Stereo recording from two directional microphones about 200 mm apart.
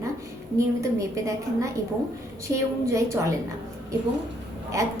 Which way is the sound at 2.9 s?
15° right (ahead or behind).